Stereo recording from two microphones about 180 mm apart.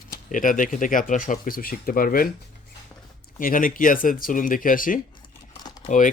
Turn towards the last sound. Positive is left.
turn(degrees=45)  # may be behind; listen again after turning